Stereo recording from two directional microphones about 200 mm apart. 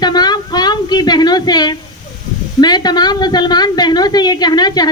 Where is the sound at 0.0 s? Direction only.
20° left (ahead or behind).